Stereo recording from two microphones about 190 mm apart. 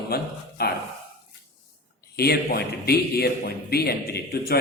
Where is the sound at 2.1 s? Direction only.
55° left (ahead or behind).